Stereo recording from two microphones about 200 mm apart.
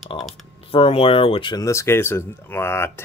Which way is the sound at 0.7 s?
30° left (ahead or behind).